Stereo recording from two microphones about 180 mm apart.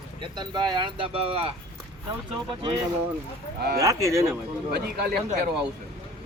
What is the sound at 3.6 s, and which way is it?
Speech, 60° right (ahead or behind).